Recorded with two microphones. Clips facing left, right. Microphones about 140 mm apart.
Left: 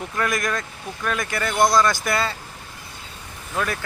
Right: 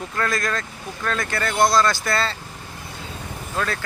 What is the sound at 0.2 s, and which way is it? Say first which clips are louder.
Speech: even; 20° left (ahead or behind).